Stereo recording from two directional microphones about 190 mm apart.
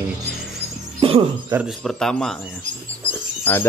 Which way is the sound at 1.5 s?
15° right (ahead or behind).